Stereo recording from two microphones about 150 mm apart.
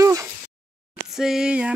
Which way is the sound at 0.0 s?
20° right (ahead or behind).